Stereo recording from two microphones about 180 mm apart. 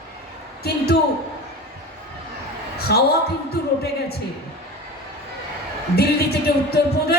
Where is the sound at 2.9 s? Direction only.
60° left (ahead or behind).